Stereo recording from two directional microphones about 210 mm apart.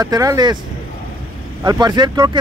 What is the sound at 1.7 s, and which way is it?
Speech, 20° right (ahead or behind).